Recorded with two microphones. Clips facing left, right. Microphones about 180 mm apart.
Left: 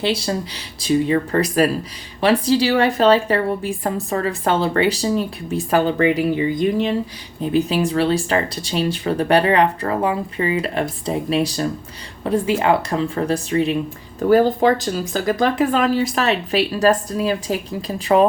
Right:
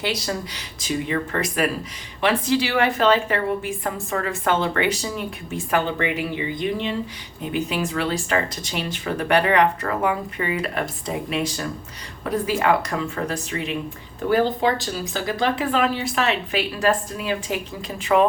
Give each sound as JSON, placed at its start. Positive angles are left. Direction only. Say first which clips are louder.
{"t": 0.0, "sound": "a woman's voice", "louder": "left 5 dB", "side_deg": 30}